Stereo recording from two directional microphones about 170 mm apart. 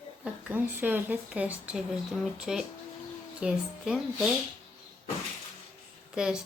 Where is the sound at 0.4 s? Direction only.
10° right (ahead or behind).